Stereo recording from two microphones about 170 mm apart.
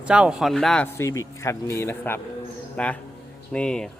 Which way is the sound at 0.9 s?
20° left (ahead or behind).